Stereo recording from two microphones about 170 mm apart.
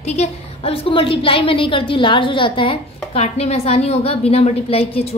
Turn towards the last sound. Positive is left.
turn(degrees=35)  # may be behind; listen again after turning